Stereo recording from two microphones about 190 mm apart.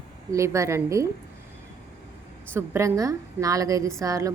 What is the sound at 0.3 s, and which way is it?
Speech, 15° right (ahead or behind).